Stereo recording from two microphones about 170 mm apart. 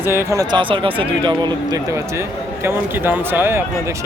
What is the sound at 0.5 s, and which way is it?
Speech, 30° right (ahead or behind).